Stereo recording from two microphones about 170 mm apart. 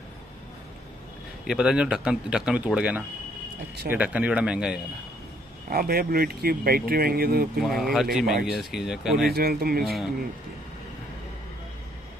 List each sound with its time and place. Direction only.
1.4 s speech: 5° right (ahead or behind)
5.7 s speech: 60° right (ahead or behind)
7.7 s speech: centre (ahead or behind)
9.3 s speech: 65° right (ahead or behind)